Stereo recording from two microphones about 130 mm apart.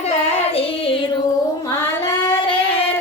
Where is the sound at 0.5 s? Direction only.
45° left (ahead or behind).